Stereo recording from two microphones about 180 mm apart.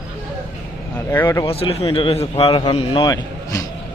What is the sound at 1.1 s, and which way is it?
Speech, 15° left (ahead or behind).